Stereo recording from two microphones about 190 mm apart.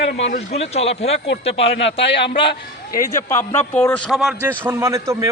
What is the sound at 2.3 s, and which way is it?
Speech, 50° left (ahead or behind).